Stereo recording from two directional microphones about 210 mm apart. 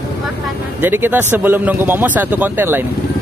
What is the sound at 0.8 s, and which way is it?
A man's voice, 10° right (ahead or behind).